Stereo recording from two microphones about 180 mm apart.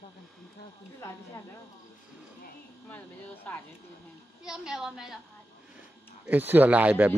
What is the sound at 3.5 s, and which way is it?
Speech, 10° left (ahead or behind).